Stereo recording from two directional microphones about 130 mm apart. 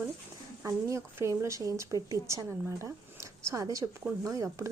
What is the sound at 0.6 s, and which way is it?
A woman's voice, 20° right (ahead or behind).